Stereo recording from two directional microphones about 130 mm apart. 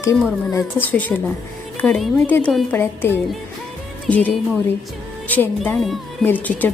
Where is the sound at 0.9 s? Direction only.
10° left (ahead or behind).